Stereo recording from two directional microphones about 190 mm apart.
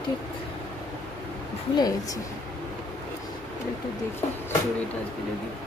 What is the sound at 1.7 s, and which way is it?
Speech, 20° left (ahead or behind).